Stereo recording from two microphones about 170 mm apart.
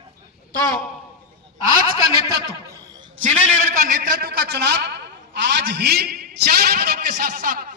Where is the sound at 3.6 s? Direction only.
55° right (ahead or behind).